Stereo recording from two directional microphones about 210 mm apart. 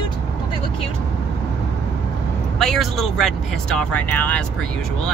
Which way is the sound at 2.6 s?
Centre (ahead or behind).